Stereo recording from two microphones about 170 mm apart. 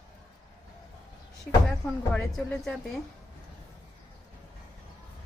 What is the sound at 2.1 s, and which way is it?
Speech, 10° left (ahead or behind).